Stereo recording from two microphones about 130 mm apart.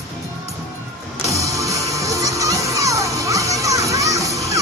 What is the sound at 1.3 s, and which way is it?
Music, 25° right (ahead or behind).